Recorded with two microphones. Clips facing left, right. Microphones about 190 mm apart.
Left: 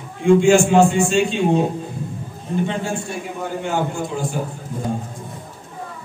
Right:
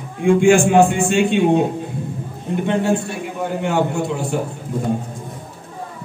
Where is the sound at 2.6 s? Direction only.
65° right (ahead or behind).